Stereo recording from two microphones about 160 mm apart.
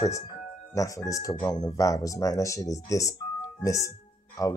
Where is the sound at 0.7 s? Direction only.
20° left (ahead or behind).